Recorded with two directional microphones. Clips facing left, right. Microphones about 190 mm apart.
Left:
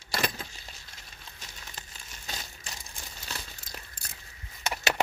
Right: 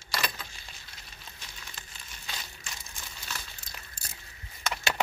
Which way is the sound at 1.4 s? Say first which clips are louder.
Left 3 dB; 40° left (ahead or behind).